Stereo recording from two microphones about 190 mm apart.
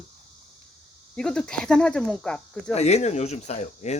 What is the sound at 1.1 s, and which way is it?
Speech, 5° left (ahead or behind).